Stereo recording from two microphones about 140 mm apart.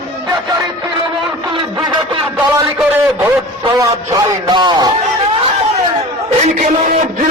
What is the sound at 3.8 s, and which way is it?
A man's voice, 25° right (ahead or behind).